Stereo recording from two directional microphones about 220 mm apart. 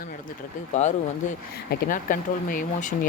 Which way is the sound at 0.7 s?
30° left (ahead or behind).